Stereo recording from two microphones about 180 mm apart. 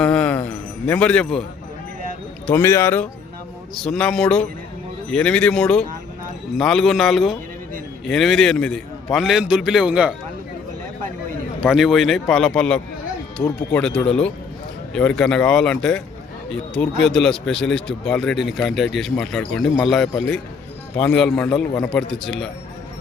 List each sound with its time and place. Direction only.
0.0 s a sound: 5° left (ahead or behind)
2.5 s a man's voice: 15° left (ahead or behind); by 10.2 s 5° right (ahead or behind)
11.6 s a man's voice: centre (ahead or behind)